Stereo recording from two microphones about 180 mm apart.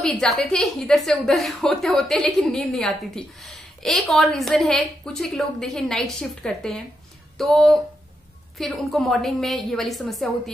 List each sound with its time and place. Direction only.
0.0 s a woman's voice: 5° left (ahead or behind)